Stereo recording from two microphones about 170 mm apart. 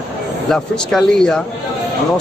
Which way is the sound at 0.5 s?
Centre (ahead or behind).